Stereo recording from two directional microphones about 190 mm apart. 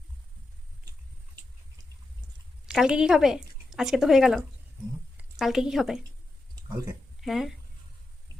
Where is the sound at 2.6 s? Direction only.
5° right (ahead or behind).